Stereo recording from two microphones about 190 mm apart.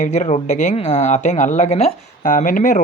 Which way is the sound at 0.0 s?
40° left (ahead or behind).